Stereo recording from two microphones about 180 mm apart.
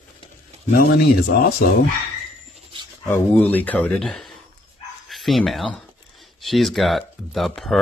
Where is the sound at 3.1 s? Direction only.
10° left (ahead or behind).